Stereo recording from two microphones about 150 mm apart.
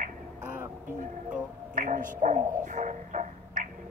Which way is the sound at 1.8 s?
60° right (ahead or behind).